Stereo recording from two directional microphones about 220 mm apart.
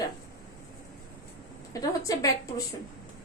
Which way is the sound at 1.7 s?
15° left (ahead or behind).